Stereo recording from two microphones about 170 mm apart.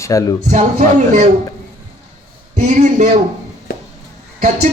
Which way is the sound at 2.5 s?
50° right (ahead or behind).